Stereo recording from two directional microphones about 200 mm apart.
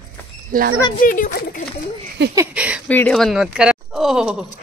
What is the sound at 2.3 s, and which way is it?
Speech, 10° right (ahead or behind).